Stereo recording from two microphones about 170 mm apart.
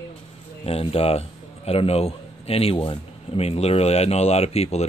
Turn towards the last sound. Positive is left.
turn(degrees=40)  # may be behind; listen again after turning